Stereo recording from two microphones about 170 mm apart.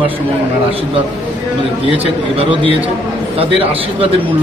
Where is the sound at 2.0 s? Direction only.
35° right (ahead or behind).